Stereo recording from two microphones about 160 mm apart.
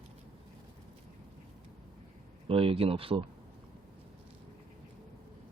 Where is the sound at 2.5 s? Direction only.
35° right (ahead or behind).